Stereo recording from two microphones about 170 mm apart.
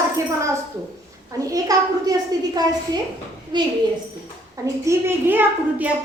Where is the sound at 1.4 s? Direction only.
20° right (ahead or behind).